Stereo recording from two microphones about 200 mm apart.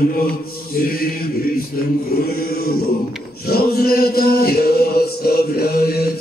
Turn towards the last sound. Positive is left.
turn(degrees=50)  # may be behind; listen again after turning